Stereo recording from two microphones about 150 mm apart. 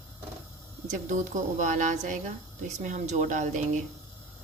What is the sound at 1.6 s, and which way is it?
Speech, 55° right (ahead or behind).